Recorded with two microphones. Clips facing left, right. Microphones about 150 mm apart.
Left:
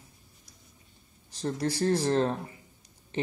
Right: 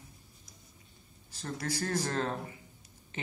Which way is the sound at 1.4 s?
35° left (ahead or behind).